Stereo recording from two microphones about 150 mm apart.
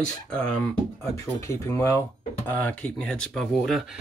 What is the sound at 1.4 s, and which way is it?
Speech, 20° left (ahead or behind).